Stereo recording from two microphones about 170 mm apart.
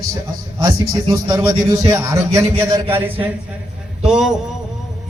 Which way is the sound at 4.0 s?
5° right (ahead or behind).